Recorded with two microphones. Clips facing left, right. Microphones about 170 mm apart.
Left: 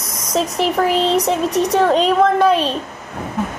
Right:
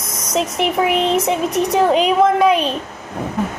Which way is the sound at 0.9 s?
30° left (ahead or behind).